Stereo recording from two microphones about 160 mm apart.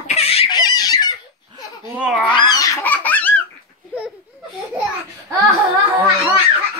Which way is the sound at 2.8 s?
10° left (ahead or behind).